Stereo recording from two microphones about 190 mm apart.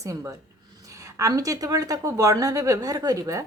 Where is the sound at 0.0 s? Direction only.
15° right (ahead or behind).